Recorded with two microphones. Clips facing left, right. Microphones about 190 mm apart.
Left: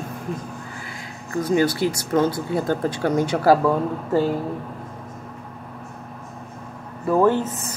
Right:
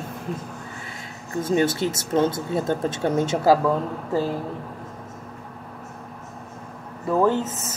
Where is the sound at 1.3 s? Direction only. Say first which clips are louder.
Left 2 dB; 25° right (ahead or behind).